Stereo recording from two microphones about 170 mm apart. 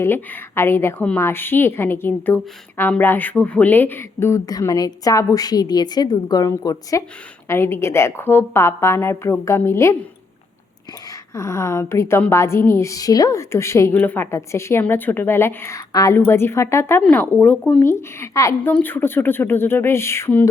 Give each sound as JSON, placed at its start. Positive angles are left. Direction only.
{"t": 0.0, "sound": "a woman's voice", "side_deg": 15}
{"t": 11.3, "sound": "a woman's voice", "side_deg": 15}